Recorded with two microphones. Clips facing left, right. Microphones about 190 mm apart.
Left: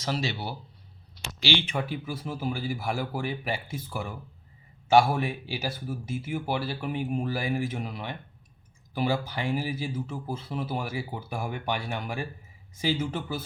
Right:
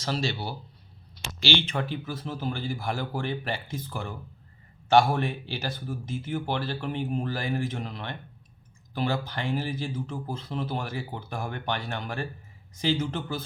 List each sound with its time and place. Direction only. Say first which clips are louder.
0.0 s speech: right 1 dB; 15° left (ahead or behind)